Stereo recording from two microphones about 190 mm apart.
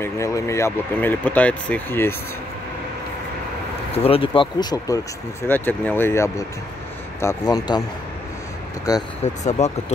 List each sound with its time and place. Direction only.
0.0 s speech: 15° left (ahead or behind)
3.9 s speech: 30° left (ahead or behind)
5.5 s speech: 10° left (ahead or behind)
9.2 s speech: 40° left (ahead or behind)